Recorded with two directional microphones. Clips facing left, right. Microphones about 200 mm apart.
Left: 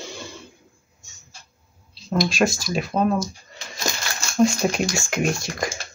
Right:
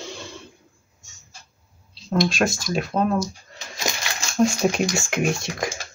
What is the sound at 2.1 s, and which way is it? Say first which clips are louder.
Speech: even; 5° left (ahead or behind).